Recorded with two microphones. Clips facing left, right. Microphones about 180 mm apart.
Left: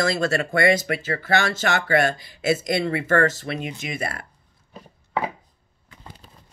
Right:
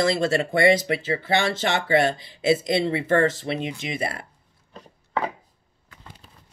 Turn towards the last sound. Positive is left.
turn(degrees=10)  # may be behind; listen again after turning